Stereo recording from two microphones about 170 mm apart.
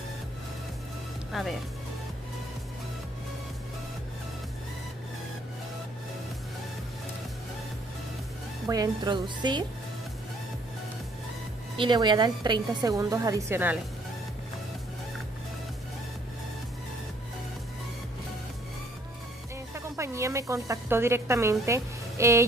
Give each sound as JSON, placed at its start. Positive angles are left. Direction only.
{"t": 1.3, "sound": "speech", "side_deg": 0}
{"t": 8.6, "sound": "a woman's voice", "side_deg": -20}
{"t": 11.7, "sound": "a woman's voice", "side_deg": -25}
{"t": 19.7, "sound": "music", "side_deg": -15}
{"t": 21.6, "sound": "speech", "side_deg": -15}